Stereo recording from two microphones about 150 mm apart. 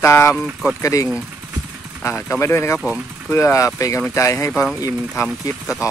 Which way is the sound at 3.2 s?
20° left (ahead or behind).